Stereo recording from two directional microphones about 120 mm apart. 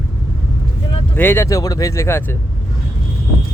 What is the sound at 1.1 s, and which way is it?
Speech, 15° left (ahead or behind).